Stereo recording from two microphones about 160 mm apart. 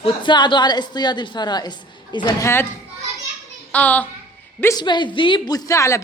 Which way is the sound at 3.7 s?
10° left (ahead or behind).